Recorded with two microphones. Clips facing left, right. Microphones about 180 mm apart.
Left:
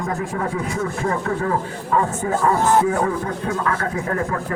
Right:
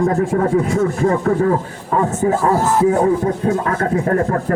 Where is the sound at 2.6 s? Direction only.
Centre (ahead or behind).